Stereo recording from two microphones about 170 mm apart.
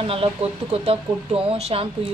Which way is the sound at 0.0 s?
35° right (ahead or behind).